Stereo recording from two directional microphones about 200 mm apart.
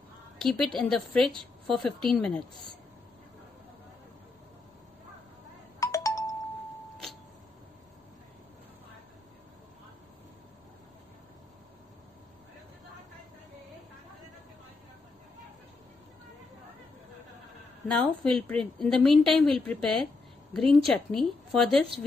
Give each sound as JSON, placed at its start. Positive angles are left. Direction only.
{"t": 0.4, "sound": "a woman's voice", "side_deg": 0}
{"t": 5.8, "sound": "music", "side_deg": 15}
{"t": 17.8, "sound": "a woman's voice", "side_deg": 5}